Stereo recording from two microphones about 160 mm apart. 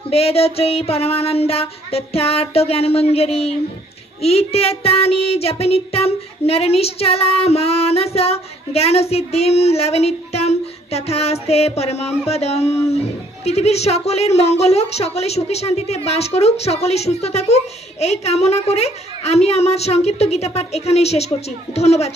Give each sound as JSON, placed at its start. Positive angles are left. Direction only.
{"t": 0.1, "sound": "speech", "side_deg": 40}